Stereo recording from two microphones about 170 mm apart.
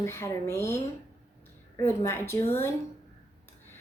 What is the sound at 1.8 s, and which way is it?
Speech, 15° left (ahead or behind).